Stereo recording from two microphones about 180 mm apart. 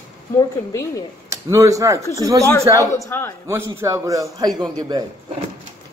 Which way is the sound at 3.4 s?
15° right (ahead or behind).